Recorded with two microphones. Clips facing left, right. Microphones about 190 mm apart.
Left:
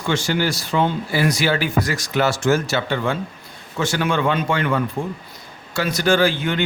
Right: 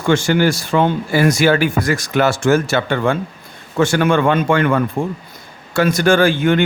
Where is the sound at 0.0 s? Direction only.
50° right (ahead or behind).